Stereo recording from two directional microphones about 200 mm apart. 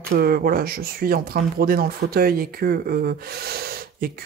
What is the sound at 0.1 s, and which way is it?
Speech, 50° right (ahead or behind).